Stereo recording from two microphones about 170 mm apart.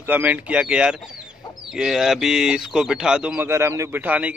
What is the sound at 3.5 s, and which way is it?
Speech, 15° right (ahead or behind).